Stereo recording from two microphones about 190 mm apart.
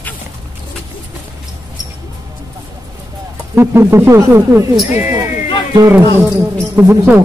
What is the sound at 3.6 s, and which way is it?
Speech, 15° right (ahead or behind).